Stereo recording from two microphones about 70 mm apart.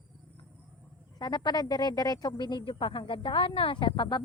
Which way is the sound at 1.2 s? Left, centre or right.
Left.